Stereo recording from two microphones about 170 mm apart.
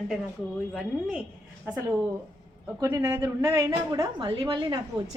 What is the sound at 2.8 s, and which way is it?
A woman's voice, 15° right (ahead or behind).